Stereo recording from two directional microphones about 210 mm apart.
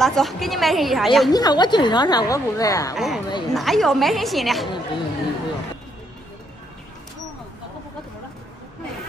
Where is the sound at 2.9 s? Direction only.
Centre (ahead or behind).